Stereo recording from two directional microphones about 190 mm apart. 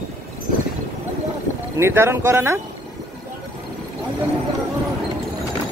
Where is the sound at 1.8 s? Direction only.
15° right (ahead or behind).